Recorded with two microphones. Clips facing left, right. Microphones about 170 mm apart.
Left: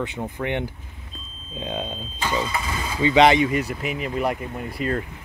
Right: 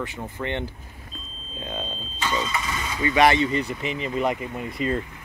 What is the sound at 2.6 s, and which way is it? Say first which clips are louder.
Speech: left 1 dB; 30° left (ahead or behind).